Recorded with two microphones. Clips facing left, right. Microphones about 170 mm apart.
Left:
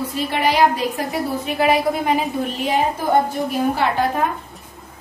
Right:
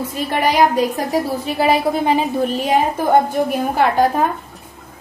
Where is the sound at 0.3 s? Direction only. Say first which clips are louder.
Right 2 dB; 45° right (ahead or behind).